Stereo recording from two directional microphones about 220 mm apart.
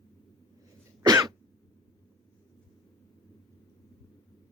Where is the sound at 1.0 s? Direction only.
15° right (ahead or behind).